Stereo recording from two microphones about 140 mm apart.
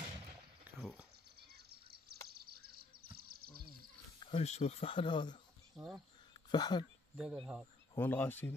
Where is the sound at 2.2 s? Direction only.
90° right.